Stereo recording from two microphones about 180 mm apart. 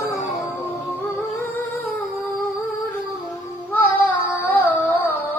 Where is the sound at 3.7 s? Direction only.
10° left (ahead or behind).